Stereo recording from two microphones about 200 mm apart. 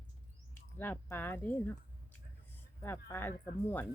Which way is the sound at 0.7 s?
10° left (ahead or behind).